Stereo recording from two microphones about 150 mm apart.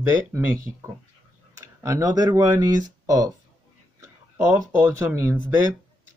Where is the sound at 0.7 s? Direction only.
10° right (ahead or behind).